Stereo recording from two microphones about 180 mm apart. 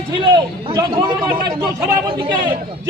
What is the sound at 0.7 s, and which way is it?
A man's voice, 25° right (ahead or behind).